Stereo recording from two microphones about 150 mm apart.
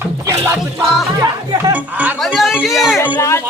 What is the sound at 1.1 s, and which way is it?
Speech, 20° right (ahead or behind).